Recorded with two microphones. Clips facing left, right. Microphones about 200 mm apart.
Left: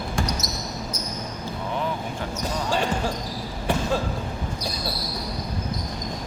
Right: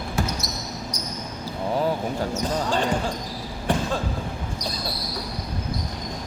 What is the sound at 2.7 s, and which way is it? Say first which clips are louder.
Basketball bounce: left 2 dB; 10° left (ahead or behind).